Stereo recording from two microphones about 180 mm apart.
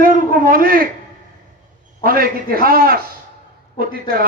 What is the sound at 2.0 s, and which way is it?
A man's voice, 55° right (ahead or behind).